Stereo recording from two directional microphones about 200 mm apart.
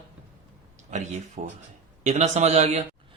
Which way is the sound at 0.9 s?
35° right (ahead or behind).